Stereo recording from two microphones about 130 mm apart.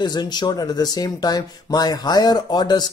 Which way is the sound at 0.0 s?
35° left (ahead or behind).